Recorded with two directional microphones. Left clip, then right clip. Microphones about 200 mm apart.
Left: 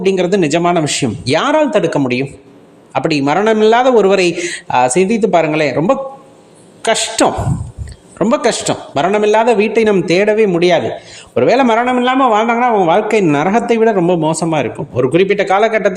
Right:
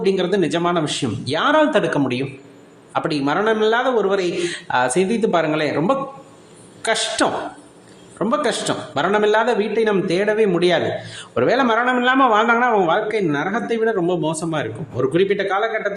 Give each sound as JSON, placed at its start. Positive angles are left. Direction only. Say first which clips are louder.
{"t": 0.0, "sound": "a man's voice", "louder": "left 5 dB", "side_deg": 30}
{"t": 6.8, "sound": "a man's voice", "louder": "left 6 dB", "side_deg": 30}
{"t": 11.9, "sound": "a man's voice", "louder": "left 4 dB", "side_deg": 20}
{"t": 13.2, "sound": "a man's voice", "louder": "left 9 dB", "side_deg": 35}